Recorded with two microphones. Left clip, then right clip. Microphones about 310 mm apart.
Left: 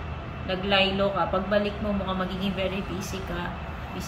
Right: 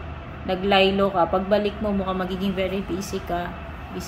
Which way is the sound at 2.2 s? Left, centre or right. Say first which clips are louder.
Right 3 dB; centre.